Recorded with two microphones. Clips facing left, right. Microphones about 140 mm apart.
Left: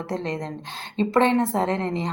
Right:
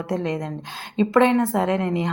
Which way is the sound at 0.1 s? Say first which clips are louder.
Right 4 dB; 5° right (ahead or behind).